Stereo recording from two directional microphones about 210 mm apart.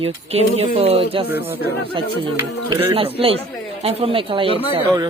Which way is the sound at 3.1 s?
25° right (ahead or behind).